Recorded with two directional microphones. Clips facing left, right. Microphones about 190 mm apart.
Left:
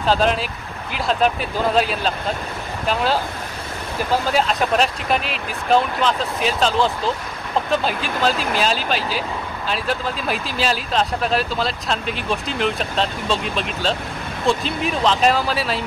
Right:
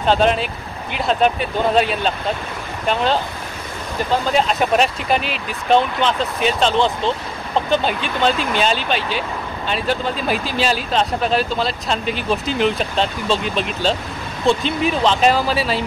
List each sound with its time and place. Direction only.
0.0 s speech: centre (ahead or behind)
4.3 s speech: centre (ahead or behind)